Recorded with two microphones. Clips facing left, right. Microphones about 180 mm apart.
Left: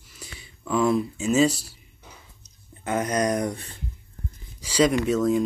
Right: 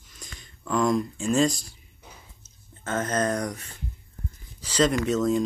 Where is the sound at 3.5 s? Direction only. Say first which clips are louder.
Left 4 dB; 30° left (ahead or behind).